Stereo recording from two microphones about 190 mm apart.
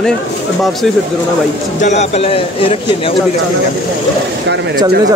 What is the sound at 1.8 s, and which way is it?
A man's voice, 35° left (ahead or behind).